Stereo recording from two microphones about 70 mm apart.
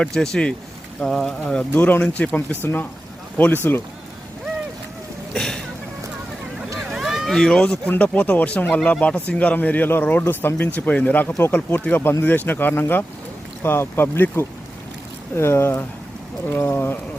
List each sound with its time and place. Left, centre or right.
0.0 s speech: centre
1.5 s speech: left
5.3 s speech: centre
6.7 s boat: centre
7.3 s speech: centre; by 17.0 s left